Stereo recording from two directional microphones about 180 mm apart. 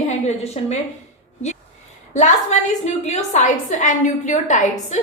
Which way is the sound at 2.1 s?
40° left (ahead or behind).